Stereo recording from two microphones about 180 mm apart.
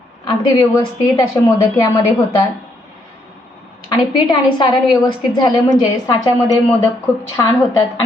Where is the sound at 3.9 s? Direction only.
25° left (ahead or behind).